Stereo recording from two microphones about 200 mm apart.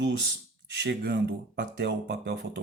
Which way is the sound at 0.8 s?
60° right (ahead or behind).